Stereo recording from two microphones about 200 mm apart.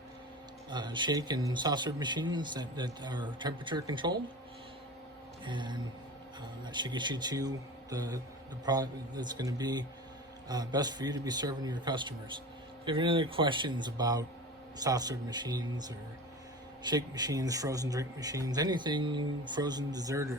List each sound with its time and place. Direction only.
0.7 s speech: 20° right (ahead or behind)
5.5 s speech: 25° right (ahead or behind)